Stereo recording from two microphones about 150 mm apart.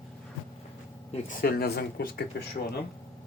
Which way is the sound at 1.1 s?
65° left (ahead or behind).